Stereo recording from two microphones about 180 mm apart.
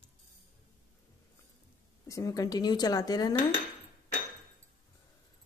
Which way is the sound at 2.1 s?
20° left (ahead or behind).